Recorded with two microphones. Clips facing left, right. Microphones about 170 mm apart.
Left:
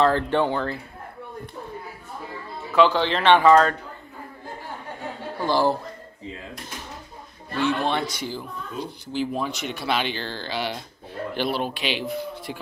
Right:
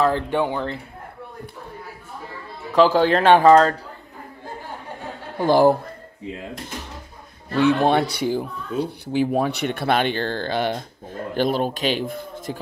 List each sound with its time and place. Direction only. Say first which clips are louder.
0.0 s speech: even; 10° right (ahead or behind)
2.7 s speech: right 4 dB; 40° right (ahead or behind)
5.5 s speech: right 7 dB; 55° right (ahead or behind)
7.5 s a man's voice: right 6 dB; 60° right (ahead or behind)